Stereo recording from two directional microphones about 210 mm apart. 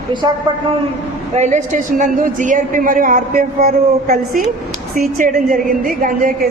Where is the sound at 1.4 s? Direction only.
35° right (ahead or behind).